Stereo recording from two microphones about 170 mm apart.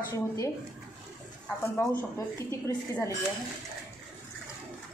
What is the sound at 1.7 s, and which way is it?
Speech, 15° left (ahead or behind).